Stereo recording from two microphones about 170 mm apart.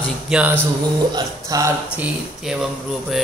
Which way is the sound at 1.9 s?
5° right (ahead or behind).